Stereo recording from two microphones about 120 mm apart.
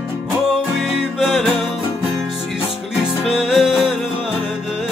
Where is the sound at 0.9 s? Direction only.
Centre (ahead or behind).